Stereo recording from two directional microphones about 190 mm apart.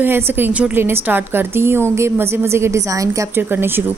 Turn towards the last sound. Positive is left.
turn(degrees=-10)  # may be behind; listen again after turning